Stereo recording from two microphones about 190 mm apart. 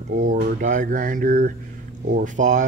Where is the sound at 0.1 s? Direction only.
40° right (ahead or behind).